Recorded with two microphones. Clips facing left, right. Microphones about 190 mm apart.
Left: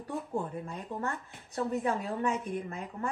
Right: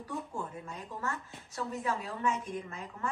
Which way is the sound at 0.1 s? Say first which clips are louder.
Left 5 dB; 35° left (ahead or behind).